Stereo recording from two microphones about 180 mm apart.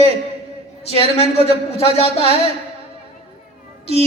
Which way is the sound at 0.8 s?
35° left (ahead or behind).